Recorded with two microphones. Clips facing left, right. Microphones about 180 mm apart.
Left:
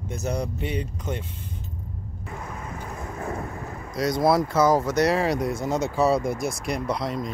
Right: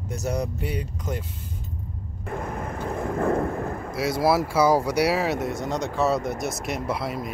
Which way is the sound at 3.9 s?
5° right (ahead or behind).